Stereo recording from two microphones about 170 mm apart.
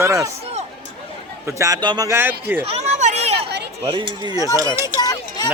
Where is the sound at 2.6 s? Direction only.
35° right (ahead or behind).